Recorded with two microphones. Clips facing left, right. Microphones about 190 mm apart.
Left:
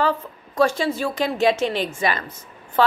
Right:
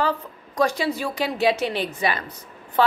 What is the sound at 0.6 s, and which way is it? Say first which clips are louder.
A woman's voice: left 2 dB; 15° right (ahead or behind).